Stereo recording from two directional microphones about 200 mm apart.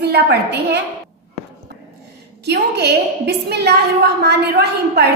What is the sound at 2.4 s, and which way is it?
A woman's voice, 55° right (ahead or behind).